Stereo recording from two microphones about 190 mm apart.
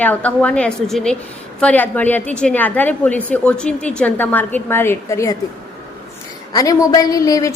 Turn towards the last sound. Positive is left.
turn(degrees=20)  # may be behind; listen again after turning